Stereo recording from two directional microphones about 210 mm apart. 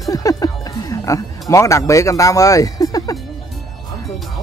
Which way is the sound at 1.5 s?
15° left (ahead or behind).